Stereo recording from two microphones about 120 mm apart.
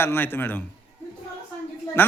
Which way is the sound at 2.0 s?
20° left (ahead or behind).